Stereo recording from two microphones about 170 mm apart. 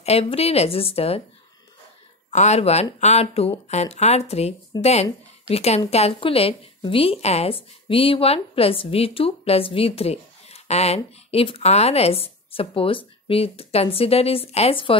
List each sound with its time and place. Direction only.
0.0 s a woman's voice: 35° left (ahead or behind)
2.3 s a woman's voice: 40° left (ahead or behind)